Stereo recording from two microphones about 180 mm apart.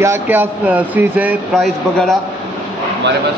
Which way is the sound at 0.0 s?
10° right (ahead or behind).